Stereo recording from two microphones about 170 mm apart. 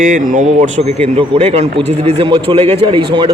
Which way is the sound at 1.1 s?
35° right (ahead or behind).